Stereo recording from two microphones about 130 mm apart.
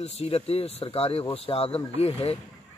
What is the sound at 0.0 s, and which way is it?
A man's voice, 50° left (ahead or behind).